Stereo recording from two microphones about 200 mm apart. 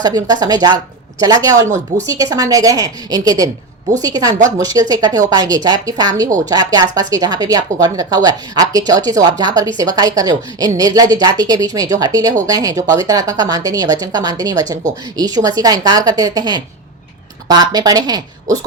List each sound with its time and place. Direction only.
0.0 s a woman's voice: 20° right (ahead or behind)
6.2 s a woman's voice: 40° right (ahead or behind)
6.5 s speech: 20° right (ahead or behind)